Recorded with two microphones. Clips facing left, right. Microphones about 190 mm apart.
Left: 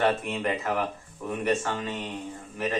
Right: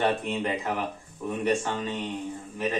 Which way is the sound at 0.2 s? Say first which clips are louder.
Even; 15° right (ahead or behind).